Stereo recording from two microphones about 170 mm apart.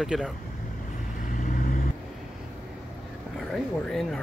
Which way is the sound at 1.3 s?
50° left (ahead or behind).